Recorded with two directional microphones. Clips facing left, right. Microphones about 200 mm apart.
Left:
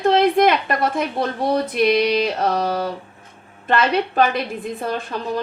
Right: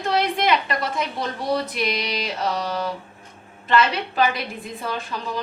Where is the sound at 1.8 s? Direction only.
55° left (ahead or behind).